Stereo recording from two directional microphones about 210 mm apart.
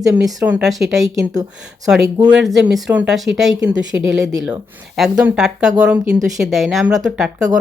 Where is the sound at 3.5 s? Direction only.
15° right (ahead or behind).